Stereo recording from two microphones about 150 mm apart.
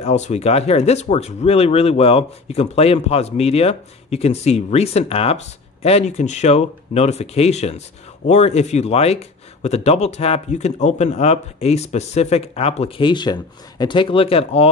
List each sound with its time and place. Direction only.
0.0 s speech: 50° left (ahead or behind)